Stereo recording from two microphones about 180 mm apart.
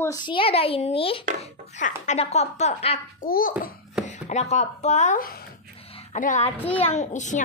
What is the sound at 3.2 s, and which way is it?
Speech, 50° left (ahead or behind).